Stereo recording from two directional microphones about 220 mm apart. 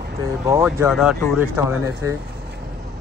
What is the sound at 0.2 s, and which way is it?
Speech, 15° right (ahead or behind).